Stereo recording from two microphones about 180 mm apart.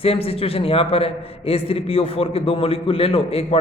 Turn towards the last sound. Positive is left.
turn(degrees=30)  # may be behind; listen again after turning